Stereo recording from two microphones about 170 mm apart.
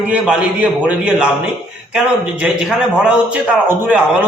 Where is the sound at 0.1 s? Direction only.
5° right (ahead or behind).